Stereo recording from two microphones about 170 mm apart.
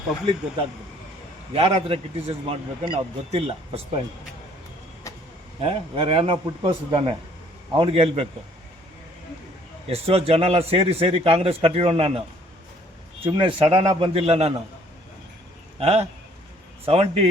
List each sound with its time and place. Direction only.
1.5 s a man's voice: 35° right (ahead or behind)
5.1 s vehicle: 20° left (ahead or behind)
5.5 s a man's voice: 30° right (ahead or behind)
9.9 s a man's voice: 35° right (ahead or behind)
13.2 s a man's voice: 30° right (ahead or behind)
15.8 s a man's voice: 35° right (ahead or behind)